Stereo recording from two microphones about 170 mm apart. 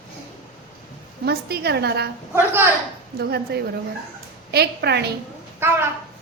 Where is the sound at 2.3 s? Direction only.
15° right (ahead or behind).